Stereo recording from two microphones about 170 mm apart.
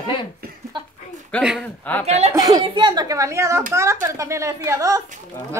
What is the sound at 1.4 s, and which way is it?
Speech, 5° right (ahead or behind).